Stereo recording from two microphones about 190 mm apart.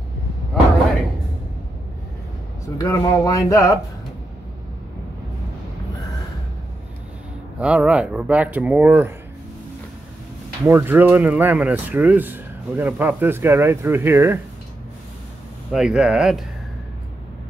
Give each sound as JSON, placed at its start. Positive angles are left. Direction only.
{"t": 2.8, "sound": "speech", "side_deg": 15}
{"t": 7.6, "sound": "speech", "side_deg": -5}
{"t": 10.7, "sound": "speech", "side_deg": -10}
{"t": 15.7, "sound": "speech", "side_deg": -5}